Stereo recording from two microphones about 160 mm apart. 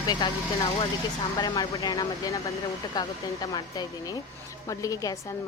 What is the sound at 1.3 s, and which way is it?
A woman's voice, 25° left (ahead or behind).